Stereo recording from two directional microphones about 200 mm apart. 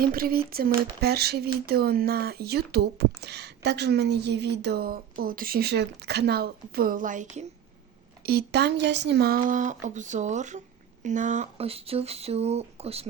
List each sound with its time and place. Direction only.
0.0 s speech: 45° right (ahead or behind)
8.2 s speech: 50° right (ahead or behind); by 13.1 s 30° right (ahead or behind)